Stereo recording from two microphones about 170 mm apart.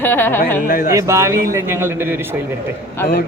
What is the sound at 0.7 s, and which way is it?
Speech, 55° left (ahead or behind).